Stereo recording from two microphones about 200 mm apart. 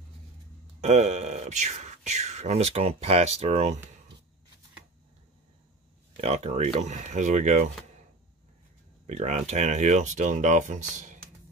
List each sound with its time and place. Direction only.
0.7 s speech: 35° right (ahead or behind)
6.2 s speech: 30° right (ahead or behind)
9.0 s speech: 35° right (ahead or behind)